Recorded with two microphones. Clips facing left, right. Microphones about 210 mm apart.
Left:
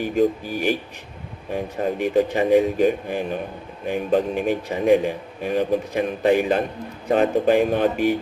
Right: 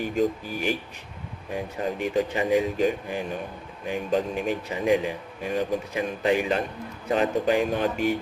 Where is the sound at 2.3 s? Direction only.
50° left (ahead or behind).